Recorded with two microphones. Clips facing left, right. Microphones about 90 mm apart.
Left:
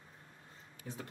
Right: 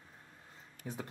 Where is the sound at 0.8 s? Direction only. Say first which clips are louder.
Right 3 dB; 10° right (ahead or behind).